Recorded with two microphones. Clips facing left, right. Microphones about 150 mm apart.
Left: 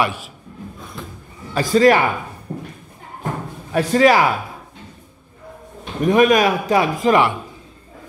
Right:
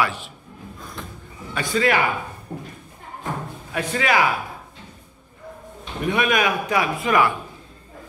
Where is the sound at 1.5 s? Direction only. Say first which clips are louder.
Left 8 dB; 35° left (ahead or behind).